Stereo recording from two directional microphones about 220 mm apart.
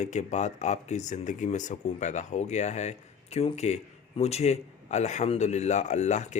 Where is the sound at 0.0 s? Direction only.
35° left (ahead or behind).